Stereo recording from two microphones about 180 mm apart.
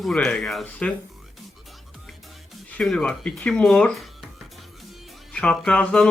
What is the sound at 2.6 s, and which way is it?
Speech, 5° left (ahead or behind).